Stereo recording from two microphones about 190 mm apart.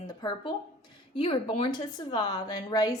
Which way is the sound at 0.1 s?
20° left (ahead or behind).